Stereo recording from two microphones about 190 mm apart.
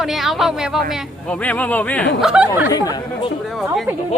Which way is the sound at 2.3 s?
5° right (ahead or behind).